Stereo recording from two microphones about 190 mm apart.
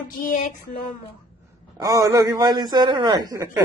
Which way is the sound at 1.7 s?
20° right (ahead or behind).